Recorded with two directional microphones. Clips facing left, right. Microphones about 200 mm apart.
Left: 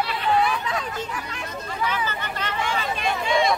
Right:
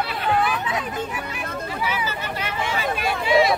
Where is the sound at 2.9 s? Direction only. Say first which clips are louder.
Right 5 dB; 5° right (ahead or behind).